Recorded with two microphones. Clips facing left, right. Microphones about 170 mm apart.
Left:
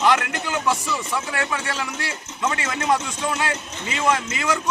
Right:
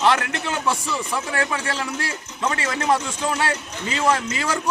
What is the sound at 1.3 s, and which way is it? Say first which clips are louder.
A man's voice: right 2 dB; 40° right (ahead or behind).